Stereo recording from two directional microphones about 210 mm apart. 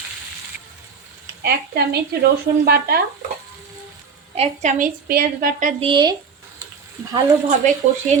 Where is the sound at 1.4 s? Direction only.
50° right (ahead or behind).